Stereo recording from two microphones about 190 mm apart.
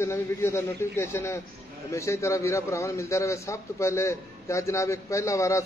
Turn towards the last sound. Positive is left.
turn(degrees=15)  # may be behind; listen again after turning